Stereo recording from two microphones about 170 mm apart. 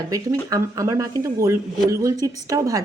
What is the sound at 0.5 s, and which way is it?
A woman's voice, 20° right (ahead or behind).